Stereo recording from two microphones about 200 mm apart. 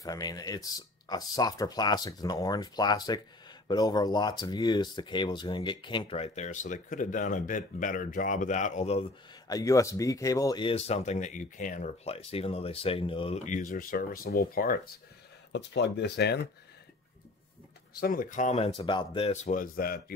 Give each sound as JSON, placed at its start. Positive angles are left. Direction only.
{"t": 0.0, "sound": "speech", "side_deg": 20}
{"t": 9.5, "sound": "speech", "side_deg": 15}
{"t": 13.5, "sound": "speech", "side_deg": 40}
{"t": 15.5, "sound": "speech", "side_deg": 60}
{"t": 18.0, "sound": "speech", "side_deg": 45}